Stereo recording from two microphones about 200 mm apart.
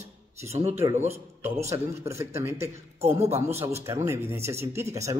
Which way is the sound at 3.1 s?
35° right (ahead or behind).